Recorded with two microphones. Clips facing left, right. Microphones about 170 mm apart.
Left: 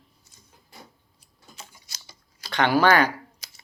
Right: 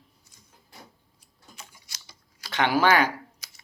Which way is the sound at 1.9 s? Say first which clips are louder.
Left 2 dB; 30° left (ahead or behind).